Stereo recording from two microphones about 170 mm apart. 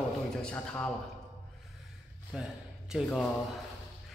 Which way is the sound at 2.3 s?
5° right (ahead or behind).